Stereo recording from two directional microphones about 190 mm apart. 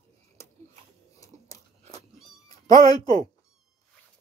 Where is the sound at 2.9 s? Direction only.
20° left (ahead or behind).